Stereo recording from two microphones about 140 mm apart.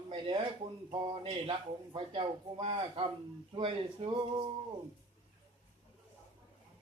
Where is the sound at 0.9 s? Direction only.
35° right (ahead or behind).